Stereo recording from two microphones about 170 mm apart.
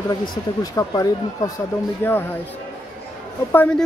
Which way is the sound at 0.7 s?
20° left (ahead or behind).